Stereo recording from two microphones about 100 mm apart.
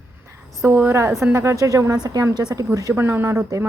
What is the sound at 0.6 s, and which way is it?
A woman's voice, 25° right (ahead or behind).